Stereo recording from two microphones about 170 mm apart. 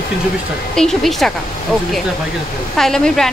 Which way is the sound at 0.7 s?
Centre (ahead or behind).